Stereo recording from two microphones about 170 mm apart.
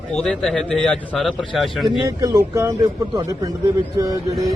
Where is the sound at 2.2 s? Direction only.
20° right (ahead or behind).